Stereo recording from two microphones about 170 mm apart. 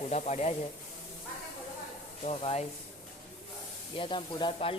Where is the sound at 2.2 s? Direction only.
40° left (ahead or behind).